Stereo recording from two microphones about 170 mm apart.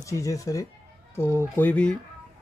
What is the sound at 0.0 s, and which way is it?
Speech, 20° left (ahead or behind).